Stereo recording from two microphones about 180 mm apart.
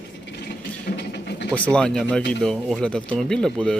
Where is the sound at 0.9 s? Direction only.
60° left (ahead or behind).